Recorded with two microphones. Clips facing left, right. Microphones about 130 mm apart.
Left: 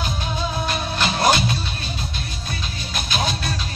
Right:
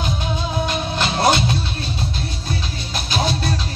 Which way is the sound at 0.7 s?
25° right (ahead or behind).